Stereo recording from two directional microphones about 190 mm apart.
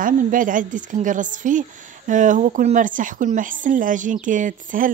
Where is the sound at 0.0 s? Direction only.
45° right (ahead or behind).